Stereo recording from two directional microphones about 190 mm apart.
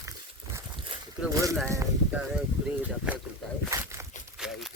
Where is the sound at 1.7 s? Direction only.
15° right (ahead or behind).